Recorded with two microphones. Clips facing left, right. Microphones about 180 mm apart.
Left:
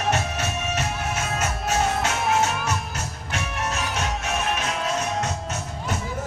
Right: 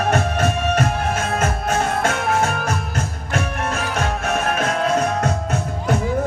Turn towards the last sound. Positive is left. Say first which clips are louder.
# right 7 dB
turn(degrees=-55)  # may be behind; listen again after turning